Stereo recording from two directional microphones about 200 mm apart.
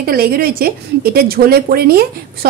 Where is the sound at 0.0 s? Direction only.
50° right (ahead or behind).